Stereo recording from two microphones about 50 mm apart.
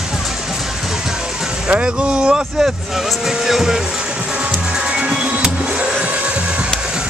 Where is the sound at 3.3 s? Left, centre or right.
Centre.